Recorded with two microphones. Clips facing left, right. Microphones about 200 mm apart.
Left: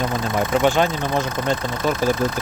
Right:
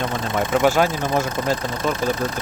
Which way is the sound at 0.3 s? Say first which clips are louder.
Right 1 dB; 5° right (ahead or behind).